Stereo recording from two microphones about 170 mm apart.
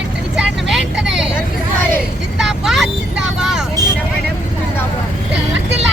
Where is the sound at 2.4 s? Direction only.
Centre (ahead or behind).